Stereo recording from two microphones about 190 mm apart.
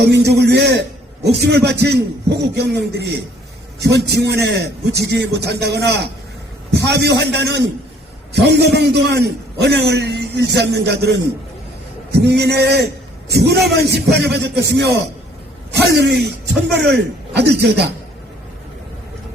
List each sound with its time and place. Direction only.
0.0 s a man's voice: 60° right (ahead or behind)
12.1 s a man's voice: 60° right (ahead or behind)